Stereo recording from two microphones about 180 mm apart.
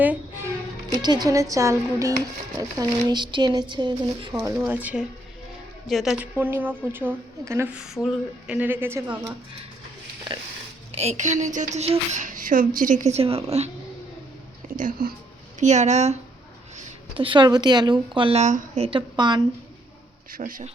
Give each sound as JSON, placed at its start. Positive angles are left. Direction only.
{"t": 0.9, "sound": "a woman's voice", "side_deg": -25}
{"t": 4.4, "sound": "a woman's voice", "side_deg": -10}
{"t": 10.9, "sound": "speech", "side_deg": -40}
{"t": 14.7, "sound": "speech", "side_deg": -50}
{"t": 15.6, "sound": "speech", "side_deg": -40}
{"t": 16.7, "sound": "a woman's voice", "side_deg": -30}
{"t": 20.3, "sound": "speech", "side_deg": -45}